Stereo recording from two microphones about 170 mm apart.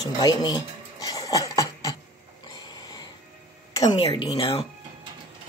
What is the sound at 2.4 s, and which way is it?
Dog, 25° left (ahead or behind).